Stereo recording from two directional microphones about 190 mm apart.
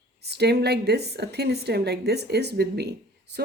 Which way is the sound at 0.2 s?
60° right (ahead or behind).